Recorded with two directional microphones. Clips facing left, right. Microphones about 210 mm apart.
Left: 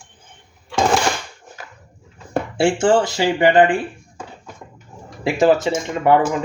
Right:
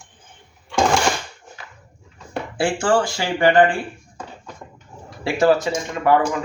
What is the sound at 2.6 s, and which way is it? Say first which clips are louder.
Speech: left 3 dB; 25° left (ahead or behind).